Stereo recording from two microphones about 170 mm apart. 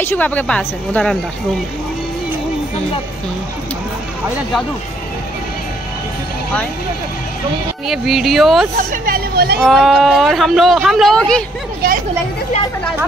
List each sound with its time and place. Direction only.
0.0 s a woman's voice: 10° left (ahead or behind)
7.8 s speech: centre (ahead or behind)
8.7 s speech: 55° right (ahead or behind)
9.7 s speech: centre (ahead or behind)